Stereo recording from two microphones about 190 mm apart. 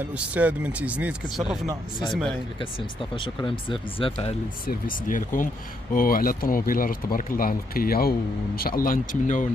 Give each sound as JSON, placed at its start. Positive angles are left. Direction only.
{"t": 0.1, "sound": "speech", "side_deg": -5}
{"t": 3.2, "sound": "speech", "side_deg": 25}
{"t": 4.6, "sound": "speech", "side_deg": 45}